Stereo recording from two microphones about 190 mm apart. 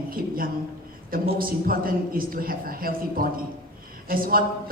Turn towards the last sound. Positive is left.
turn(degrees=-50)  # may be behind; listen again after turning